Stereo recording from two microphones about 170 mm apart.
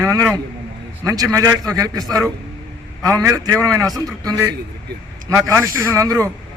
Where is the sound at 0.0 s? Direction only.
20° right (ahead or behind).